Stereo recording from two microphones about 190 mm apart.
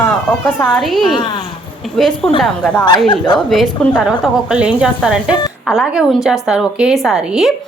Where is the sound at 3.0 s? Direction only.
20° left (ahead or behind).